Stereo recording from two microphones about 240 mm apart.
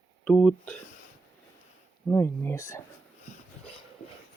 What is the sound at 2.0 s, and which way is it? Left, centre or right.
Speech, centre.